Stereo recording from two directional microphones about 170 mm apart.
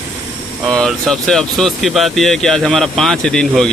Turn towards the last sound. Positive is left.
turn(degrees=5)  # may be behind; listen again after turning